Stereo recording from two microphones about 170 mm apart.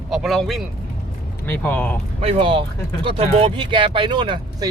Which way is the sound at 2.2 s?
30° right (ahead or behind).